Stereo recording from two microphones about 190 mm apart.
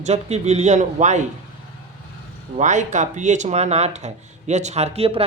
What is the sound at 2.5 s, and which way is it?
Speech, 40° right (ahead or behind).